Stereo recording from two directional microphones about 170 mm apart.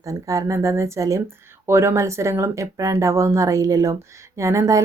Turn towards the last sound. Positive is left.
turn(degrees=-15)  # may be behind; listen again after turning